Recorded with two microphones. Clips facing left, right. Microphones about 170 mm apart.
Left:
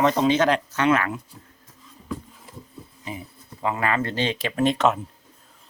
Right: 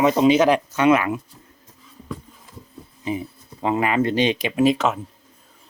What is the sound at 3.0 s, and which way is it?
Speech, 20° right (ahead or behind).